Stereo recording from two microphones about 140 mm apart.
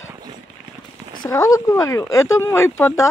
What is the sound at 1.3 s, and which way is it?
Speech, 20° left (ahead or behind).